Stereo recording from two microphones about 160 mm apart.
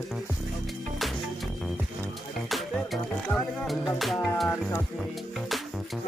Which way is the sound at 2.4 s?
Centre (ahead or behind).